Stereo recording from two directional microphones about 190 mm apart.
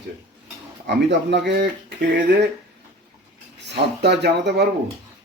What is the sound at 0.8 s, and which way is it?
Speech, 65° right (ahead or behind).